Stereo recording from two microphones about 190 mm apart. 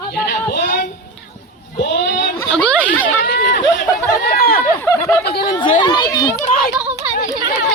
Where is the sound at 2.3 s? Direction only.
5° left (ahead or behind).